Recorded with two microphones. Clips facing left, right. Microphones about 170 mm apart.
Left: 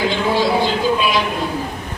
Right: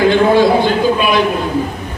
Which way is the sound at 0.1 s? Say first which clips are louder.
Right 7 dB; 55° right (ahead or behind).